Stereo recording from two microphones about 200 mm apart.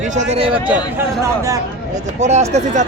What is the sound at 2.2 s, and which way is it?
Speech, 35° right (ahead or behind).